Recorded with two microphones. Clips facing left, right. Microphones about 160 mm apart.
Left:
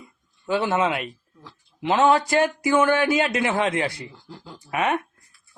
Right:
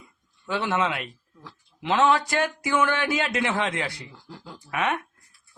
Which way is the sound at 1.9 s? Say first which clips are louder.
Left 3 dB; 40° left (ahead or behind).